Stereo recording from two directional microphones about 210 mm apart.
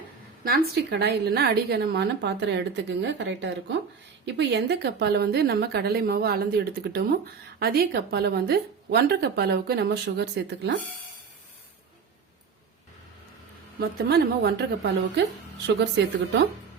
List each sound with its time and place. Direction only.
0.4 s a woman's voice: 50° right (ahead or behind)
13.7 s a woman's voice: 50° right (ahead or behind)